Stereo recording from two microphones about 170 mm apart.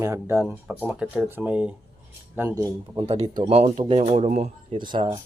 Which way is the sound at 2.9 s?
35° right (ahead or behind).